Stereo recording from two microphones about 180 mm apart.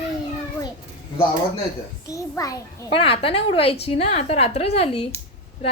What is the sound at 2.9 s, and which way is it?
A woman's voice, 30° left (ahead or behind).